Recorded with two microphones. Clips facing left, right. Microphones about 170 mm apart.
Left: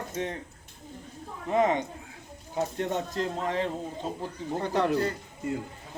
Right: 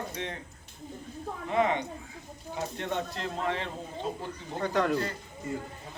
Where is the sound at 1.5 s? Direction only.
40° left (ahead or behind).